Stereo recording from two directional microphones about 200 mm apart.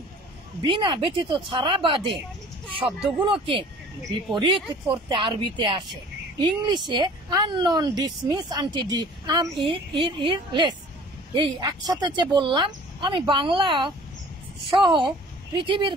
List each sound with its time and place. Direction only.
0.7 s speech: 25° right (ahead or behind)